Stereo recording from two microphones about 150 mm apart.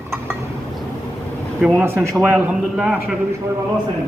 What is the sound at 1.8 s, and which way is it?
A man's voice, 15° right (ahead or behind).